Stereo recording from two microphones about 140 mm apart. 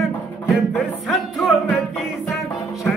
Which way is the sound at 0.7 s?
Centre (ahead or behind).